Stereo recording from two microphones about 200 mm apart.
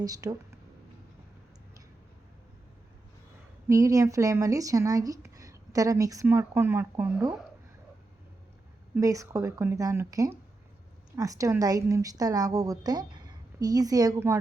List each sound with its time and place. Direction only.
0.0 s speech: 20° right (ahead or behind)
3.7 s speech: 15° right (ahead or behind)
9.0 s speech: 15° right (ahead or behind)